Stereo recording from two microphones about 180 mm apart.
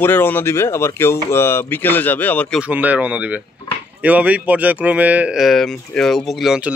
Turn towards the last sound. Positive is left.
turn(degrees=-5)  # may be behind; listen again after turning